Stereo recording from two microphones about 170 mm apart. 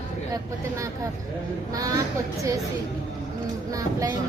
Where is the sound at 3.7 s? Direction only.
20° right (ahead or behind).